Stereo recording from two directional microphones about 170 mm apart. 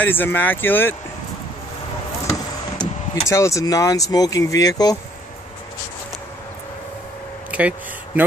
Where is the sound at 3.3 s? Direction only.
15° left (ahead or behind).